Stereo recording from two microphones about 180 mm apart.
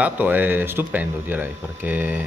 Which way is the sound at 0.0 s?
10° right (ahead or behind).